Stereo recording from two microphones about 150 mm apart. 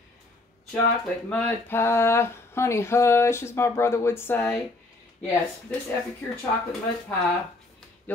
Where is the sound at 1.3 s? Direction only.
10° left (ahead or behind).